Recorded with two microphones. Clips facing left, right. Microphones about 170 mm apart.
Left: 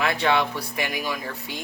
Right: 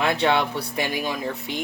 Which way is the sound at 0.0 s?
25° right (ahead or behind).